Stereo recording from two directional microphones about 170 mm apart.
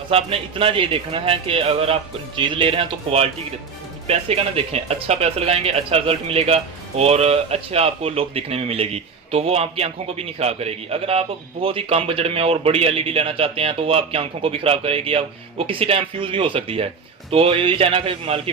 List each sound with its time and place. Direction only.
0.1 s speech: 35° right (ahead or behind)